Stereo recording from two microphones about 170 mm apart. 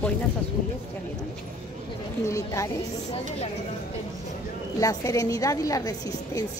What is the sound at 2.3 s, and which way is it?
Speech, 20° left (ahead or behind).